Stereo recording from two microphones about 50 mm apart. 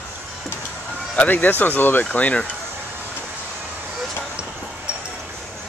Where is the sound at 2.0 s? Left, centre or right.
Left.